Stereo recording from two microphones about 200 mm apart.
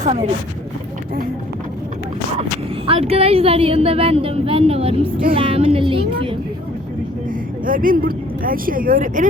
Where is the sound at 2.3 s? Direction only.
30° right (ahead or behind).